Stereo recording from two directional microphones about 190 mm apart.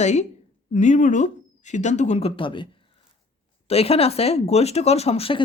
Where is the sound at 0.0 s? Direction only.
35° left (ahead or behind).